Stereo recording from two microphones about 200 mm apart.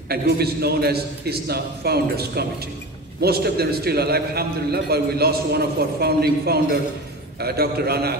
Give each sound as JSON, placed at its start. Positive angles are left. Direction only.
{"t": 0.1, "sound": "a man's voice", "side_deg": -50}